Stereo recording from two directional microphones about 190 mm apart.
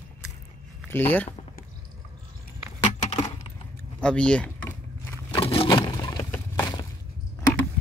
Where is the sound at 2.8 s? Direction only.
35° left (ahead or behind).